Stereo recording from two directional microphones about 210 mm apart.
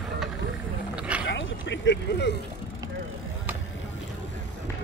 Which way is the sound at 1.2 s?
60° left (ahead or behind).